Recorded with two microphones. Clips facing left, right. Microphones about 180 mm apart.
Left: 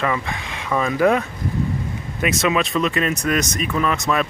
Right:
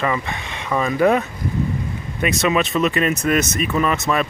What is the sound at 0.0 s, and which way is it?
Speech, 5° right (ahead or behind).